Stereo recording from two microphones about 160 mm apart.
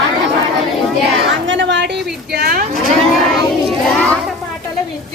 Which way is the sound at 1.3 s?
90° right.